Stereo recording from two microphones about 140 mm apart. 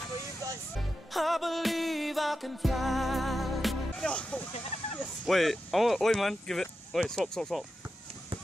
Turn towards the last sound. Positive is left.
turn(degrees=5)  # may be behind; listen again after turning